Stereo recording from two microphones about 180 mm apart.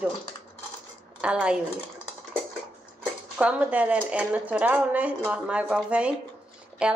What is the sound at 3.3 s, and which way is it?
A woman's voice, 5° right (ahead or behind).